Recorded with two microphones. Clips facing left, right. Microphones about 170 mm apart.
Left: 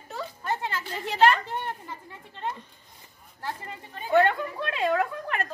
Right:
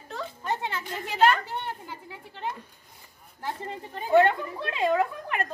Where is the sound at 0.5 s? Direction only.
20° right (ahead or behind).